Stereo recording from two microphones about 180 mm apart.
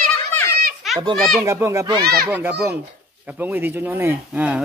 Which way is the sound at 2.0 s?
60° right (ahead or behind).